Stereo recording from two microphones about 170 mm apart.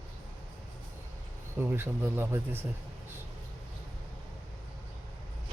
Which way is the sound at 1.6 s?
15° right (ahead or behind).